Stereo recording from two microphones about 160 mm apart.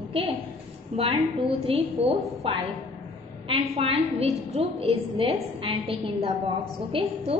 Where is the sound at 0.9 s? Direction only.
35° right (ahead or behind).